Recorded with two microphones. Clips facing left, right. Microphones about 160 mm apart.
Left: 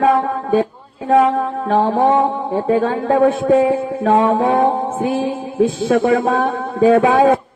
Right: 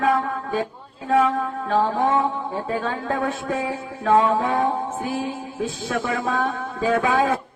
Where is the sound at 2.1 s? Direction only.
60° left (ahead or behind).